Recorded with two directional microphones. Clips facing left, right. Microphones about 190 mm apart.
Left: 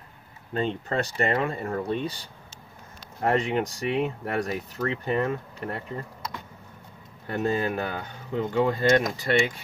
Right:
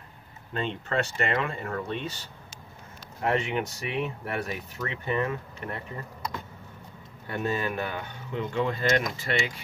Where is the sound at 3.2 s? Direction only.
40° left (ahead or behind).